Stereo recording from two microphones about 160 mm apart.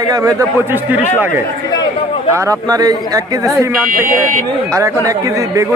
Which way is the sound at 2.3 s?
20° right (ahead or behind).